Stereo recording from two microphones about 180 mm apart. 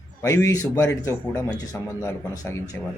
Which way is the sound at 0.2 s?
15° left (ahead or behind).